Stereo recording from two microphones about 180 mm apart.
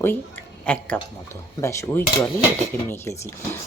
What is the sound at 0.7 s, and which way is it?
Speech, 10° left (ahead or behind).